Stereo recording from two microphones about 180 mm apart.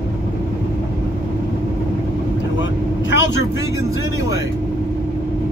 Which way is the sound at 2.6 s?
85° left.